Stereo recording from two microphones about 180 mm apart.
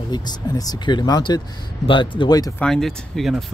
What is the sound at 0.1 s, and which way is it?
Speech, 25° left (ahead or behind).